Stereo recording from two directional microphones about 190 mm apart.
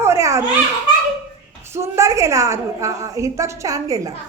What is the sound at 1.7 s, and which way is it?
A woman's voice, 15° right (ahead or behind).